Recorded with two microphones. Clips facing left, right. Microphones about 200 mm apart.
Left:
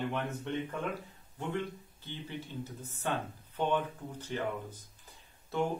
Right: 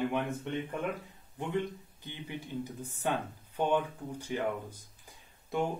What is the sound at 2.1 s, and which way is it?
Speech, 15° right (ahead or behind).